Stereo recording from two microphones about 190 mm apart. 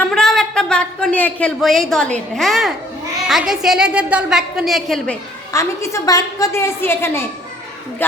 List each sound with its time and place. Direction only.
0.1 s a woman's voice: centre (ahead or behind)
5.5 s a woman's voice: 15° left (ahead or behind)